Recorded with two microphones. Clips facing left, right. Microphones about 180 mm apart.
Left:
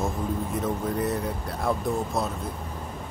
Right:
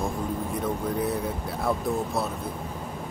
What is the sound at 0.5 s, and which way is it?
Speech, centre (ahead or behind).